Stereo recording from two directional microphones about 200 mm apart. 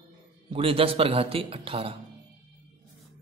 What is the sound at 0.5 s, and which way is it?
A man's voice, 30° right (ahead or behind).